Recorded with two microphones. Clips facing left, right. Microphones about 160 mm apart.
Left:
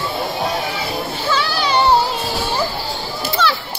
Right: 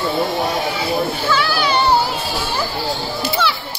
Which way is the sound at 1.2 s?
30° left (ahead or behind).